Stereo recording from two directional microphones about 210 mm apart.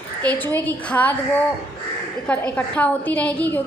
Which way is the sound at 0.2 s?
10° left (ahead or behind).